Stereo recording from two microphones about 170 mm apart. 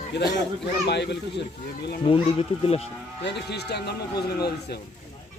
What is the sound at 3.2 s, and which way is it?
Speech, 75° left (ahead or behind).